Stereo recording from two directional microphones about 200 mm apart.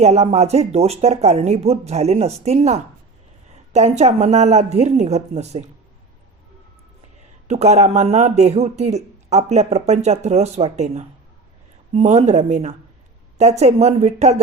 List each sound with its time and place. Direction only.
0.0 s speech: 35° right (ahead or behind)
7.4 s speech: 35° right (ahead or behind)